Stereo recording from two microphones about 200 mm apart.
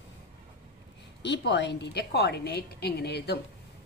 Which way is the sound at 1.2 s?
60° left (ahead or behind).